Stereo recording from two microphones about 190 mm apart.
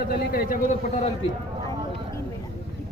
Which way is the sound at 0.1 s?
50° left (ahead or behind).